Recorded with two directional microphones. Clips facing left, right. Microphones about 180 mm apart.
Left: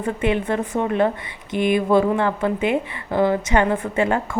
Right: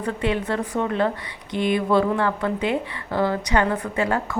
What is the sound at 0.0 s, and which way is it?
A woman's voice, 20° left (ahead or behind).